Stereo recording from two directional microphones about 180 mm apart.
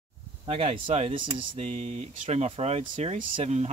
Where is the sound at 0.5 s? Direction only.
35° right (ahead or behind).